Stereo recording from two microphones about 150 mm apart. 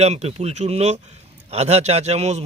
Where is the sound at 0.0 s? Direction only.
45° right (ahead or behind).